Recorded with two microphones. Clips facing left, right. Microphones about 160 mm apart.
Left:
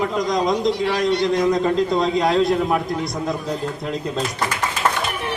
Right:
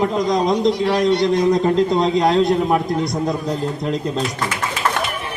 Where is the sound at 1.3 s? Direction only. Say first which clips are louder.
Right 2 dB; 20° right (ahead or behind).